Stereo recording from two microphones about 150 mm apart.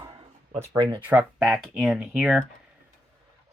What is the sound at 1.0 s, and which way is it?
Speech, 10° right (ahead or behind).